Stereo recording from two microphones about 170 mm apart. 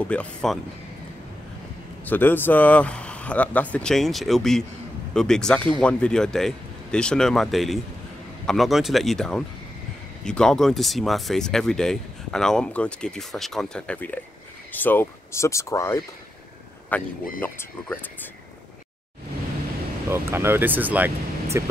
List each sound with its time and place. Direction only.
0.0 s speech: 5° left (ahead or behind)
2.0 s speech: 10° left (ahead or behind)
20.1 s speech: 15° right (ahead or behind)